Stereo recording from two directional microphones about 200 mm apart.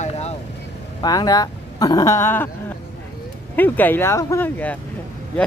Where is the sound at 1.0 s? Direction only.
20° left (ahead or behind).